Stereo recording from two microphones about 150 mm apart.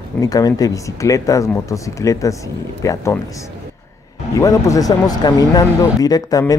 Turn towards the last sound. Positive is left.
turn(degrees=25)  # may be behind; listen again after turning